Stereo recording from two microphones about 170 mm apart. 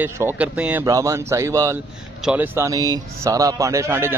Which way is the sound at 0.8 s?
20° right (ahead or behind).